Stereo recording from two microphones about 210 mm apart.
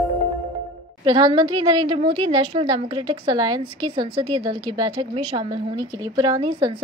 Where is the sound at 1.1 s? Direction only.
20° right (ahead or behind).